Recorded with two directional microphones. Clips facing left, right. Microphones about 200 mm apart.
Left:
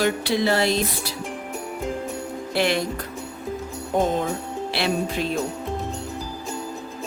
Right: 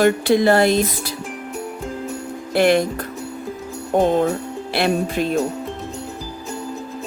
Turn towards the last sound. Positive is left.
turn(degrees=-50)  # may be behind; listen again after turning